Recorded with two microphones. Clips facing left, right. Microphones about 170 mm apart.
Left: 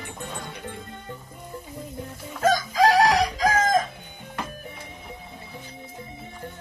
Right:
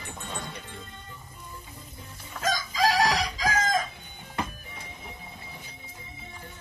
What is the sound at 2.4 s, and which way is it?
Chicken, 55° left (ahead or behind).